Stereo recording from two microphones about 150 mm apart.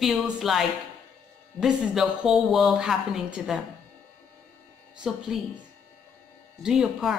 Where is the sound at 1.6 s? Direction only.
5° right (ahead or behind).